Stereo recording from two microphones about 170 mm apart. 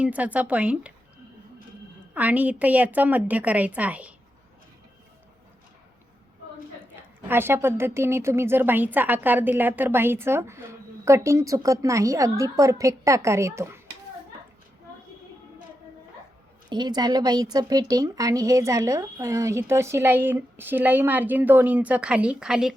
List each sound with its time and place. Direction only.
0.0 s speech: 10° right (ahead or behind)
2.1 s speech: 10° right (ahead or behind)
7.3 s speech: 15° right (ahead or behind)
16.6 s speech: 25° right (ahead or behind); by 22.7 s 5° right (ahead or behind)